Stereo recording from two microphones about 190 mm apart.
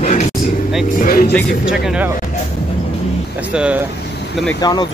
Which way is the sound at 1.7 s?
5° right (ahead or behind).